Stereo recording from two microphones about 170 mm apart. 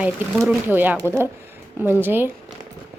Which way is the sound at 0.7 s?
10° right (ahead or behind).